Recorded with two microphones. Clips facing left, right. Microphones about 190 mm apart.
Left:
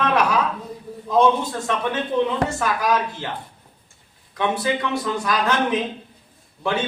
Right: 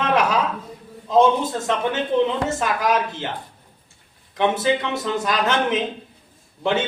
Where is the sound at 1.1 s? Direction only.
20° right (ahead or behind).